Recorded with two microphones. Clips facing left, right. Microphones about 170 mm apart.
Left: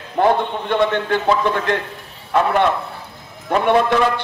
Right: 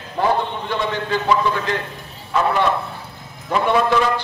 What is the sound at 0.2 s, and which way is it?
A man's voice, 60° left (ahead or behind).